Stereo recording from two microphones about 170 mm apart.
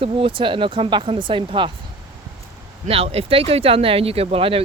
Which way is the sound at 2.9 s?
35° right (ahead or behind).